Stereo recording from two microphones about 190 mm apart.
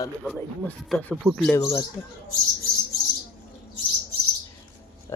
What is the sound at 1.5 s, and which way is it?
Speech, 15° left (ahead or behind).